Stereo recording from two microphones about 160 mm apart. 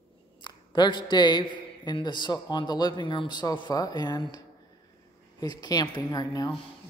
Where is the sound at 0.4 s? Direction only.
30° left (ahead or behind).